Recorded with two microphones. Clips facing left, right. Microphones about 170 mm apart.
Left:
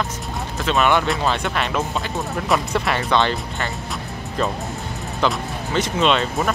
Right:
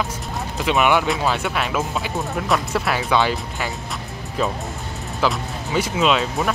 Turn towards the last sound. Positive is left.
turn(degrees=-5)  # may be behind; listen again after turning